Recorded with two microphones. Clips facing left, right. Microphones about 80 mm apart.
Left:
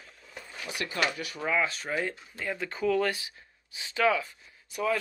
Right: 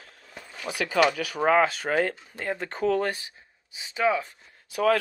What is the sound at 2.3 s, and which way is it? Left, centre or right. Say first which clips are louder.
Speech: right 3 dB; right.